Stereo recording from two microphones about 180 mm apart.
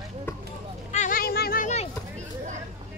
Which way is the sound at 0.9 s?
45° left (ahead or behind).